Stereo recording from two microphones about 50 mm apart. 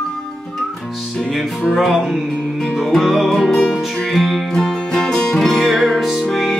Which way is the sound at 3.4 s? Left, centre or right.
Centre.